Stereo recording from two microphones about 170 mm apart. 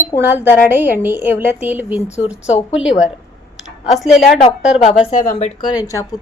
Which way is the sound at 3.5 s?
Centre (ahead or behind).